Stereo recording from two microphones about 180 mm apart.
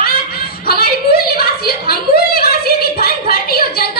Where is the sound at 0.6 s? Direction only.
55° left (ahead or behind).